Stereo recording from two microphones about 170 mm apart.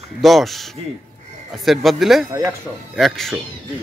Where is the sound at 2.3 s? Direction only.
15° right (ahead or behind).